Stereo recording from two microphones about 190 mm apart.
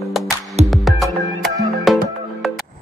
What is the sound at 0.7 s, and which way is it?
Music, centre (ahead or behind).